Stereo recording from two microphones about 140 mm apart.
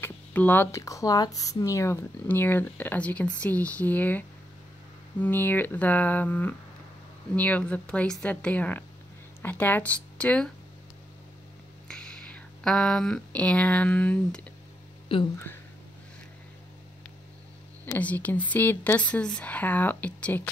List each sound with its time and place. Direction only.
0.0 s speech: 15° left (ahead or behind)
11.9 s speech: 5° left (ahead or behind)
17.8 s speech: 10° left (ahead or behind)